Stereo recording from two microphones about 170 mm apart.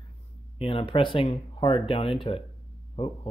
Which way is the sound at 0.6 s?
30° left (ahead or behind).